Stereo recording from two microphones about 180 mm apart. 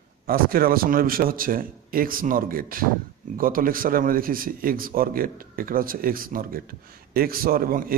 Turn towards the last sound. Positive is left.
turn(degrees=-55)  # may be behind; listen again after turning